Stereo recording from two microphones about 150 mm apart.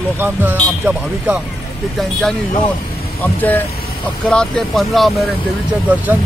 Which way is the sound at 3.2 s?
10° left (ahead or behind).